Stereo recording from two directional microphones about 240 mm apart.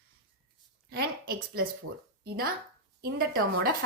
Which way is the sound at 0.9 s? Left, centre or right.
Right.